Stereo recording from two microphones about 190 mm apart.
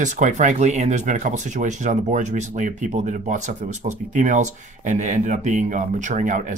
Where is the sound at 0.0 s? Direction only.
40° right (ahead or behind).